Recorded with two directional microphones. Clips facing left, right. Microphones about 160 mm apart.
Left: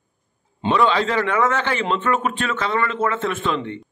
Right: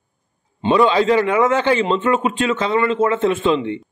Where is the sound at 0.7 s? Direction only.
15° right (ahead or behind).